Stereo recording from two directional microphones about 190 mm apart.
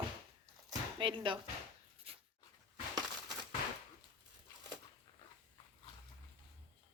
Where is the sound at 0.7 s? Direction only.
25° right (ahead or behind).